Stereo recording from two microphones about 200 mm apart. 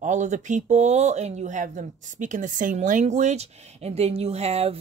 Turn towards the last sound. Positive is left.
turn(degrees=-30)  # may be behind; listen again after turning